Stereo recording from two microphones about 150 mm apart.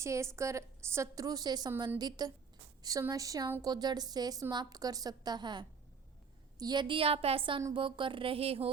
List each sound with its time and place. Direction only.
0.0 s a woman's voice: 20° right (ahead or behind); by 8.7 s 40° right (ahead or behind)